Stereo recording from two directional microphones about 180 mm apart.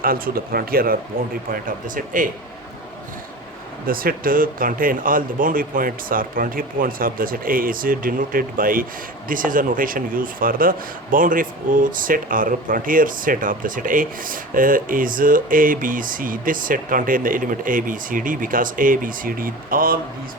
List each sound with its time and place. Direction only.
0.0 s speech: 55° right (ahead or behind)
3.8 s speech: 55° right (ahead or behind)